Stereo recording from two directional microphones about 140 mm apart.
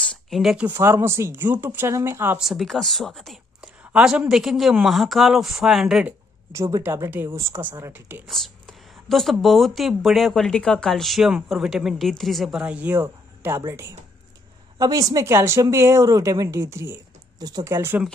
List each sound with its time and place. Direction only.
0.0 s a sound: centre (ahead or behind)
0.7 s speech: 20° right (ahead or behind)
2.3 s speech: centre (ahead or behind)
6.5 s speech: 20° right (ahead or behind)
8.3 s speech: centre (ahead or behind); by 18.0 s 20° right (ahead or behind)